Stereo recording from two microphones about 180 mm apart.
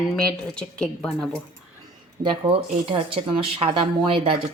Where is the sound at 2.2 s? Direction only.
25° right (ahead or behind).